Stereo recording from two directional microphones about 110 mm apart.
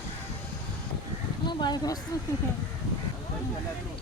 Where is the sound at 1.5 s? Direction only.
40° left (ahead or behind).